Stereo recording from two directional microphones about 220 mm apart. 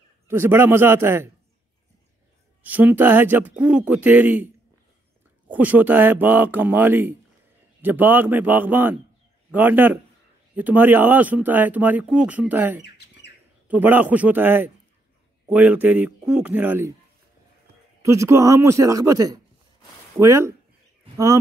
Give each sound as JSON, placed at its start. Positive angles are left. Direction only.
{"t": 0.3, "sound": "speech", "side_deg": -10}
{"t": 2.6, "sound": "speech", "side_deg": -5}
{"t": 5.5, "sound": "speech", "side_deg": -5}
{"t": 12.8, "sound": "bird", "side_deg": 50}
{"t": 13.7, "sound": "speech", "side_deg": -10}
{"t": 18.0, "sound": "speech", "side_deg": -15}